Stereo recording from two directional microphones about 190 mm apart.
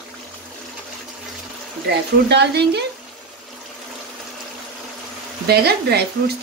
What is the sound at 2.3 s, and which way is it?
Speech, 60° right (ahead or behind).